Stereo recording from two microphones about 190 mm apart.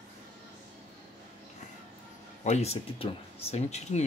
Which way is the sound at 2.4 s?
35° left (ahead or behind).